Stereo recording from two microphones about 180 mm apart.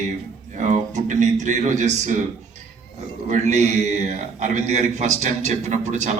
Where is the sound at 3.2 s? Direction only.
40° right (ahead or behind).